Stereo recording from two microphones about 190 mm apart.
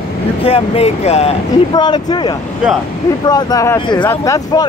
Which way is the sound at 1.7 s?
20° left (ahead or behind).